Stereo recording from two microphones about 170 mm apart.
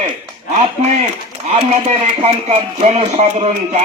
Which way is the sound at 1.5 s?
40° right (ahead or behind).